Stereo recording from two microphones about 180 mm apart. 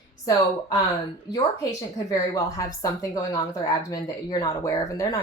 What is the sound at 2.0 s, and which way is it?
A woman's voice, 20° left (ahead or behind).